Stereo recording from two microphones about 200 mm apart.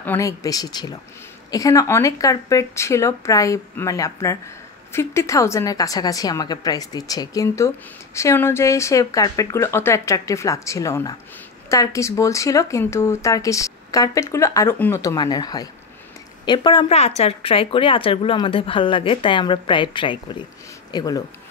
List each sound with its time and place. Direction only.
0.0 s a woman's voice: 10° left (ahead or behind)